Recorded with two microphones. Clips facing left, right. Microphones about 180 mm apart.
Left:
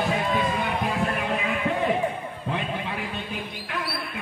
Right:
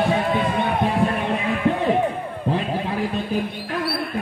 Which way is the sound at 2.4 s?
35° right (ahead or behind).